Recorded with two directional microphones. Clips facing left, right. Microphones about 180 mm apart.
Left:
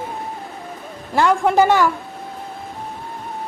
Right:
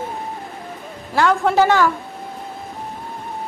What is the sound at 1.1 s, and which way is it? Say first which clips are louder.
Speech: left 1 dB; 15° left (ahead or behind).